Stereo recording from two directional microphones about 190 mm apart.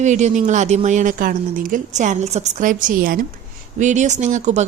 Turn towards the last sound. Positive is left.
turn(degrees=-40)  # may be behind; listen again after turning